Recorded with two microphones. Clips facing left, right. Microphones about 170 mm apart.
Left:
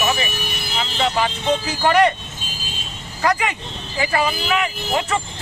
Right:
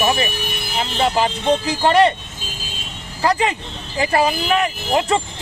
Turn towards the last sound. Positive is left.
turn(degrees=-30)  # may be behind; listen again after turning